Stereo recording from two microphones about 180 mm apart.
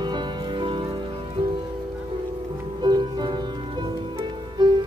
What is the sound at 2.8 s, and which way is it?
Music, 25° right (ahead or behind).